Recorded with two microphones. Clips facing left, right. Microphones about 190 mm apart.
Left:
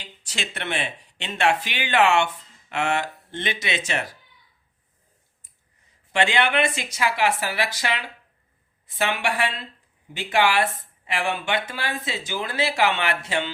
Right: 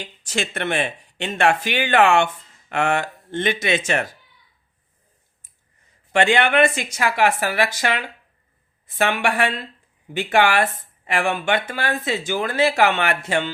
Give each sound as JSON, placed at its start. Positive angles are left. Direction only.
{"t": 0.0, "sound": "speech", "side_deg": -50}
{"t": 6.1, "sound": "speech", "side_deg": -50}